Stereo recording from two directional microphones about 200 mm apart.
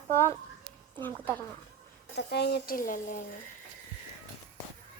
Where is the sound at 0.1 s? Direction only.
10° left (ahead or behind).